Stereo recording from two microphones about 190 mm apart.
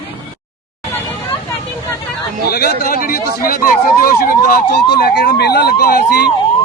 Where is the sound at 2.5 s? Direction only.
55° left (ahead or behind).